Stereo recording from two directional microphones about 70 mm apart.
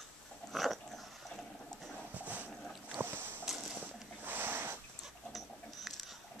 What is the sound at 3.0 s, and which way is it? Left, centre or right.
Boat, right.